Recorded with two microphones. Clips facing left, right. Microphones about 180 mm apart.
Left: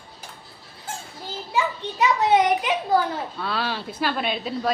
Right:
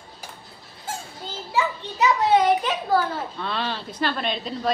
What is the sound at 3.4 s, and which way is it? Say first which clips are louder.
A child's voice: left 2 dB; 5° left (ahead or behind).